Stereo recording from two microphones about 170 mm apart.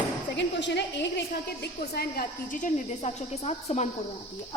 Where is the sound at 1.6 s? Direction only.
65° left (ahead or behind); by 3.9 s 40° left (ahead or behind).